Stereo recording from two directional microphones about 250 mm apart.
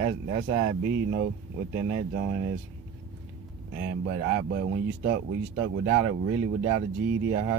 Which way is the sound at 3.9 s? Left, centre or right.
Right.